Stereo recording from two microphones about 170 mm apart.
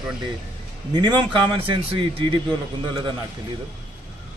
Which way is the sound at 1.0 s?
25° right (ahead or behind).